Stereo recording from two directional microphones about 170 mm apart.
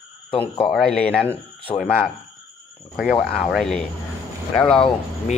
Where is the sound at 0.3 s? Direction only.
35° left (ahead or behind).